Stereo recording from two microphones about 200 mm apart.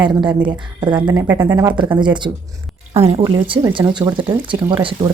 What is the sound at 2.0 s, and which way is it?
Speech, 25° right (ahead or behind).